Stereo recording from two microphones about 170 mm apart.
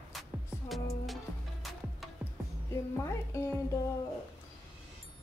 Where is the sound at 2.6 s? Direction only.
15° left (ahead or behind).